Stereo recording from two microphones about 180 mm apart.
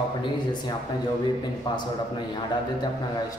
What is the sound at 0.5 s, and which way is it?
Speech, 25° left (ahead or behind).